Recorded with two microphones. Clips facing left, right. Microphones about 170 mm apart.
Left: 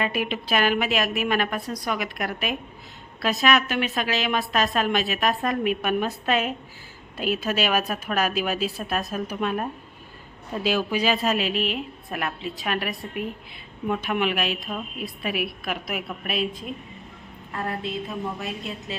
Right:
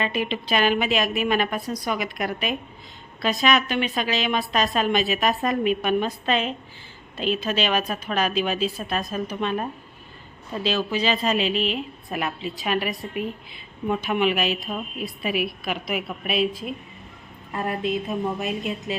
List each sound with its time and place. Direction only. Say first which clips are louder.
0.0 s a woman's voice: right 1 dB; 5° left (ahead or behind)
17.5 s a woman's voice: right 4 dB; 15° right (ahead or behind)